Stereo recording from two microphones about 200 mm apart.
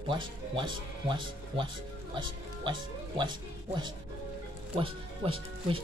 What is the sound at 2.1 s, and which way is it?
Speech, 25° right (ahead or behind).